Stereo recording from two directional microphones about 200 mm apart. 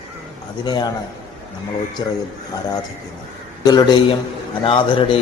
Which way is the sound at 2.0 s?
20° left (ahead or behind).